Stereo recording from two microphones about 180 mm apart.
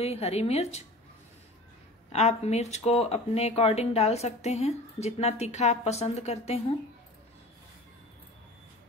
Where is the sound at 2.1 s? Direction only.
40° left (ahead or behind).